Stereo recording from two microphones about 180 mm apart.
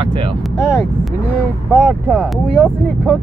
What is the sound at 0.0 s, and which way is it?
Speech, 30° right (ahead or behind).